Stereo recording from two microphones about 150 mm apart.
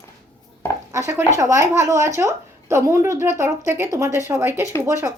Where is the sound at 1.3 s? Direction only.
20° right (ahead or behind).